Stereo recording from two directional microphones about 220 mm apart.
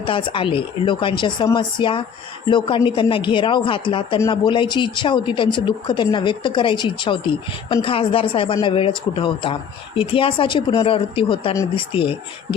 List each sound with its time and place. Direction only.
0.0 s a woman's voice: 20° left (ahead or behind)